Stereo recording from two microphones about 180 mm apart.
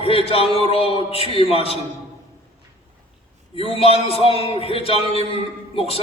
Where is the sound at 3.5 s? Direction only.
35° left (ahead or behind).